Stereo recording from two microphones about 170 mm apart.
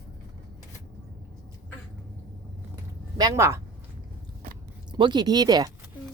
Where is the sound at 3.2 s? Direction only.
20° right (ahead or behind).